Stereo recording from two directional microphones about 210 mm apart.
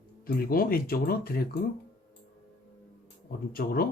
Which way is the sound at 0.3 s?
45° left (ahead or behind).